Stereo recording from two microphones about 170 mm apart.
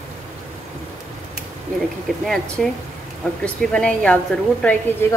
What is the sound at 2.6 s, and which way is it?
A woman's voice, 5° left (ahead or behind).